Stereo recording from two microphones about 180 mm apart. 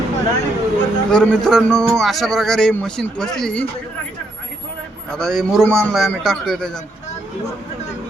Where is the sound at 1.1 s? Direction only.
5° left (ahead or behind).